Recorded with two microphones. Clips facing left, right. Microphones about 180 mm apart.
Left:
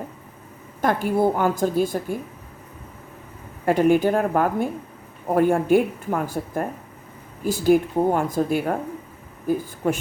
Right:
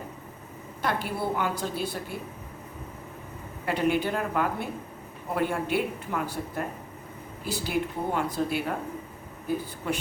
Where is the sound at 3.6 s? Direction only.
45° left (ahead or behind).